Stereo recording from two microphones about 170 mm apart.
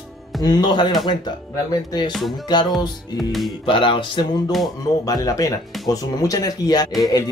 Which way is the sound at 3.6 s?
30° left (ahead or behind).